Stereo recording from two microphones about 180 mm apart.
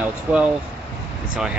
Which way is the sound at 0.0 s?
5° right (ahead or behind).